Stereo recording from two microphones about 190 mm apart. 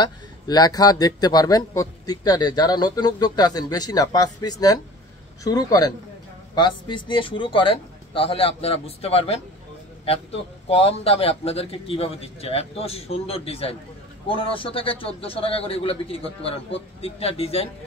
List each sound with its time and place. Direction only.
0.0 s speech: 20° left (ahead or behind)
10.7 s a man's voice: 30° left (ahead or behind)